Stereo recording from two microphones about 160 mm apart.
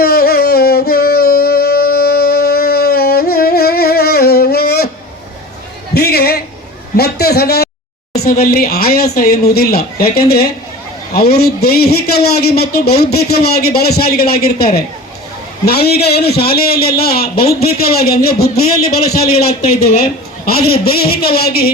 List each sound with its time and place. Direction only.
0.0 s music: 80° left
5.9 s a sound: 80° left
8.1 s a man's voice: 75° left (ahead or behind)